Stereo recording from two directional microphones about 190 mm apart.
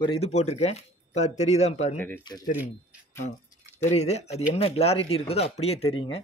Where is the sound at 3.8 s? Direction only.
35° left (ahead or behind).